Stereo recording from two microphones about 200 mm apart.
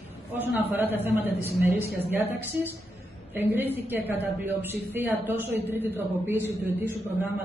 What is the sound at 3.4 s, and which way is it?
A woman's voice, 10° right (ahead or behind).